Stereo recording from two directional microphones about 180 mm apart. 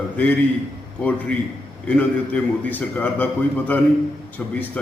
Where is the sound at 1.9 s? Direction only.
10° left (ahead or behind).